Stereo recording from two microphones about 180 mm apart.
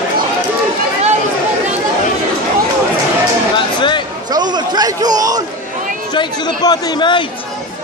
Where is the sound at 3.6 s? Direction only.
25° left (ahead or behind).